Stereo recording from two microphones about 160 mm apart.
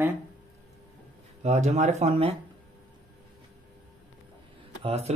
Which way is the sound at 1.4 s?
45° right (ahead or behind).